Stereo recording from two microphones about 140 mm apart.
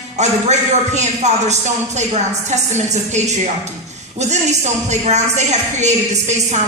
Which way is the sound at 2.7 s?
55° right (ahead or behind).